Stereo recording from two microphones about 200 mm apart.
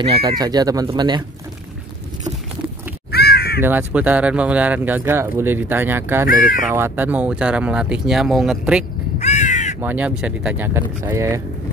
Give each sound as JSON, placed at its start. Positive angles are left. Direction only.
{"t": 0.0, "sound": "speech", "side_deg": -25}
{"t": 3.1, "sound": "crow", "side_deg": 50}
{"t": 3.6, "sound": "speech", "side_deg": -10}
{"t": 6.2, "sound": "speech", "side_deg": 45}
{"t": 6.7, "sound": "speech", "side_deg": -10}
{"t": 9.2, "sound": "crow", "side_deg": 35}
{"t": 9.8, "sound": "speech", "side_deg": -10}